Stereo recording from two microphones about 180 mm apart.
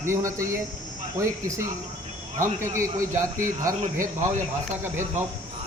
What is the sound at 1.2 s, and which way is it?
Speech, 15° right (ahead or behind).